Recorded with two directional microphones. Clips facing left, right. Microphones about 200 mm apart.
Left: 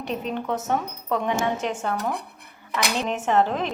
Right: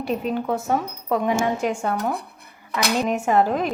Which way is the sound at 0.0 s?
5° right (ahead or behind).